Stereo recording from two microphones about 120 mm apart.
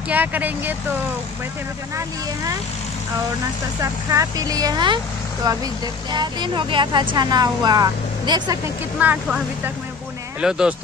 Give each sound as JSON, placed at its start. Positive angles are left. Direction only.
{"t": 0.1, "sound": "speech", "side_deg": -15}
{"t": 3.8, "sound": "speech", "side_deg": -25}
{"t": 9.0, "sound": "speech", "side_deg": -15}
{"t": 10.4, "sound": "speech", "side_deg": -5}